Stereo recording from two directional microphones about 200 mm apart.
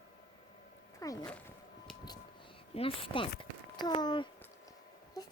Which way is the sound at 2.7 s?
30° left (ahead or behind).